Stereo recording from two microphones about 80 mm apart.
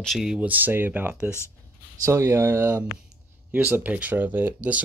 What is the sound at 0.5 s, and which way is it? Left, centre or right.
Speech, right.